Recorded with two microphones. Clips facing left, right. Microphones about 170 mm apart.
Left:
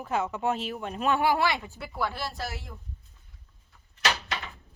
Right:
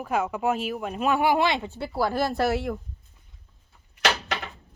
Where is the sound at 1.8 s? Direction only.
35° right (ahead or behind); by 2.8 s 70° right (ahead or behind).